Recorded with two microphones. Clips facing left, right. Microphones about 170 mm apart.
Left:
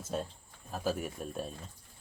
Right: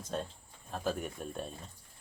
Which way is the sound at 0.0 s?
5° left (ahead or behind).